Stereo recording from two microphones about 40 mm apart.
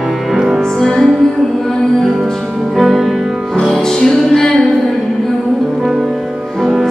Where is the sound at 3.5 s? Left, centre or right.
Left.